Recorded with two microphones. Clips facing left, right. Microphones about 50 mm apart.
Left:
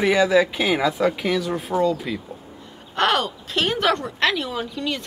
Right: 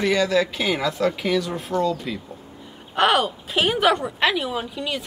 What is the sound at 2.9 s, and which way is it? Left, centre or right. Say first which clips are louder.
Speech: right 2 dB; centre.